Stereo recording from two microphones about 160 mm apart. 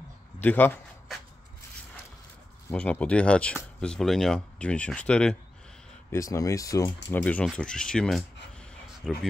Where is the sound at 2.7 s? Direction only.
5° left (ahead or behind).